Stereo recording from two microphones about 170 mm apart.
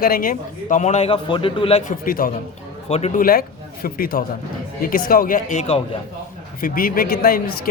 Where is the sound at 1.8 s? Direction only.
55° left (ahead or behind).